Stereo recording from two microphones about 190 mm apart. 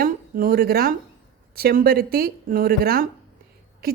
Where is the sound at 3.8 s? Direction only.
55° right (ahead or behind).